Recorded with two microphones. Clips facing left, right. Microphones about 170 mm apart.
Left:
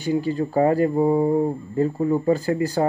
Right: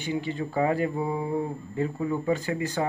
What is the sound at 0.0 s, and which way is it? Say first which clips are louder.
Speech: left 7 dB; 40° left (ahead or behind).